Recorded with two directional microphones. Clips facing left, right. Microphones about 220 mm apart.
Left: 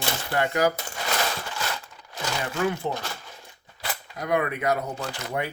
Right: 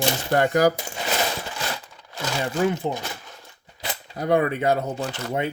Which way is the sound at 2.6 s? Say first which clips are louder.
Right 2 dB; 20° right (ahead or behind).